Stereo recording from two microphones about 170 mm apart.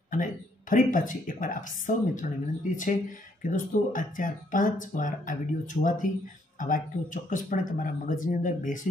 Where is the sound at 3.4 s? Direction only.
50° left (ahead or behind).